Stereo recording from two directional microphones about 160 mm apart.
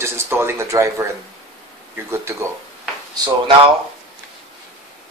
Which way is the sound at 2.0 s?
15° right (ahead or behind).